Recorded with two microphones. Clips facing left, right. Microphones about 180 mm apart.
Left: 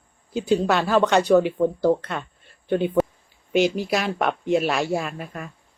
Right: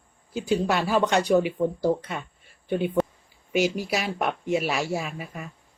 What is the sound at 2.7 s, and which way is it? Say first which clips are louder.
Speech: left 3 dB; 5° right (ahead or behind).